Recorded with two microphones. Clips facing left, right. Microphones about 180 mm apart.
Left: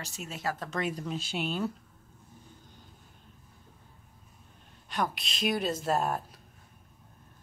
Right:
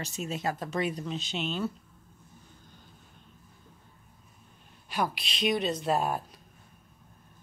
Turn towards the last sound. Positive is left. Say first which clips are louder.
# right 1 dB
turn(degrees=0)  # may be behind; listen again after turning